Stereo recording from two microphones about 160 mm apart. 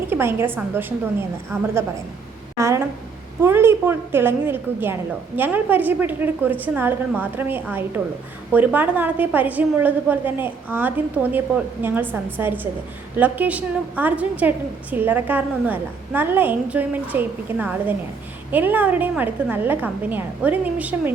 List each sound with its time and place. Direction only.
0.1 s a woman's voice: 15° right (ahead or behind)